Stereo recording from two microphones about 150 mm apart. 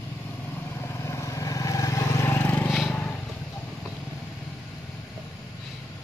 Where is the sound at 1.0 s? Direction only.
20° left (ahead or behind).